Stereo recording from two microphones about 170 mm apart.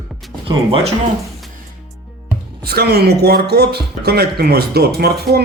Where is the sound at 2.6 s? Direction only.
70° right (ahead or behind).